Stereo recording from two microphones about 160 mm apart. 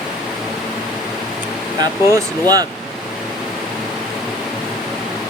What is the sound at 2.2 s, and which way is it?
Speech, 25° right (ahead or behind).